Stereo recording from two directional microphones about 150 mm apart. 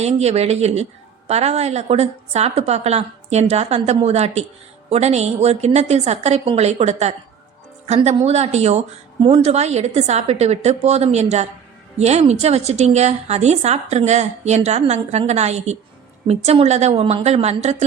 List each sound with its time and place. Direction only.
0.0 s a woman's voice: 45° right (ahead or behind)